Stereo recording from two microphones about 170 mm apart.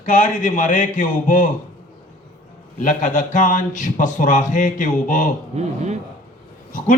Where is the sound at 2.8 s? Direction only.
50° left (ahead or behind).